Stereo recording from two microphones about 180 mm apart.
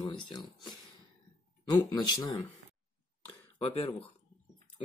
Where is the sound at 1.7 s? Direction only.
25° left (ahead or behind).